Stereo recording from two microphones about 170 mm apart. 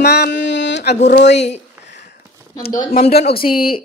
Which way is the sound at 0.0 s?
80° left.